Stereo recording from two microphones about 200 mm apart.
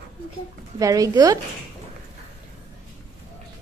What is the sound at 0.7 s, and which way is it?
Speech, 15° right (ahead or behind).